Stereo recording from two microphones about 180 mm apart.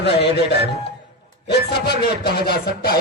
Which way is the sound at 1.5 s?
65° left (ahead or behind).